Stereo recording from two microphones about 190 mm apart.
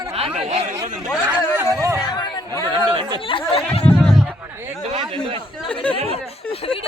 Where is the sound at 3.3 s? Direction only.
30° left (ahead or behind).